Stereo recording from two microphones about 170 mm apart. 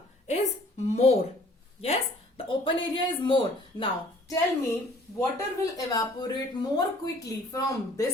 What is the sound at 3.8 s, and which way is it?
A woman's voice, 20° left (ahead or behind).